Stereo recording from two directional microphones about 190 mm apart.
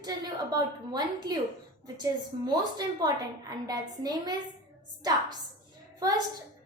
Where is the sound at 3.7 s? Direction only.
20° right (ahead or behind).